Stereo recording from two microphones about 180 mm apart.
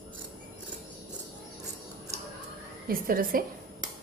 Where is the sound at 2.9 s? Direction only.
55° right (ahead or behind).